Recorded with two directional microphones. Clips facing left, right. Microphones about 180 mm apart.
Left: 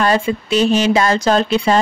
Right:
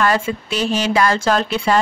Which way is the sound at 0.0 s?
20° left (ahead or behind).